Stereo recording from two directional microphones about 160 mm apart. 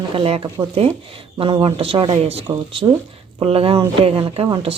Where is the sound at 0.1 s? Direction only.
35° right (ahead or behind).